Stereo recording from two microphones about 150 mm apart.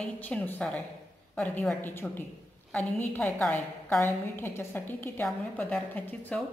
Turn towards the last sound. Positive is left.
turn(degrees=10)  # may be behind; listen again after turning